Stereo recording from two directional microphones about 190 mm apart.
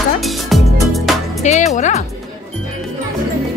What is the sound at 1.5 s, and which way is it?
Music, 40° left (ahead or behind).